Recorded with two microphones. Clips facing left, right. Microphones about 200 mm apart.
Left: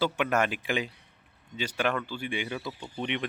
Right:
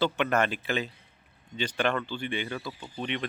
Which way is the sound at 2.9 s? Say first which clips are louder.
Left 1 dB; 15° left (ahead or behind).